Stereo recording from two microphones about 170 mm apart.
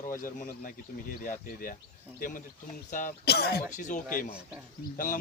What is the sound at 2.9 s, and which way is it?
Speech, 50° left (ahead or behind).